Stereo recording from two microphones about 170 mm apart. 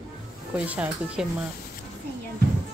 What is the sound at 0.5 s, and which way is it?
Speech, 10° right (ahead or behind).